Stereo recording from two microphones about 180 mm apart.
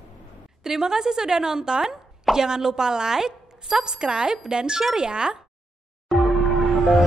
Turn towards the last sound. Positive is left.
turn(degrees=0)  # may be behind; listen again after turning